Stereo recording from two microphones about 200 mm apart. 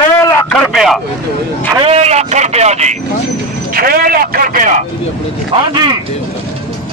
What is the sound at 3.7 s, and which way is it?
Speech, 45° right (ahead or behind).